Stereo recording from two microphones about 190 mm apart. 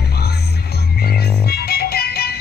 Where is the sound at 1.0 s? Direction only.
55° left (ahead or behind).